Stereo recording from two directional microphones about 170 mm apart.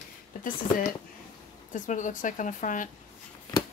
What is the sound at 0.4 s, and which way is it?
Speech, 50° left (ahead or behind).